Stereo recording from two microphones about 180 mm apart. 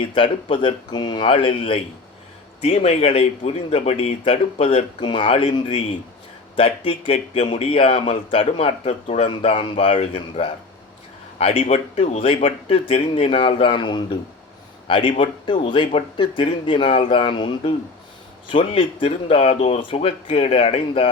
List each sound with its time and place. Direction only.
0.0 s a man's voice: 30° left (ahead or behind)
6.6 s a man's voice: 30° left (ahead or behind)